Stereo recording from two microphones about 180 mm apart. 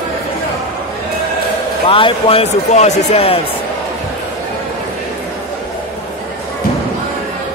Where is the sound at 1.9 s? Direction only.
30° left (ahead or behind).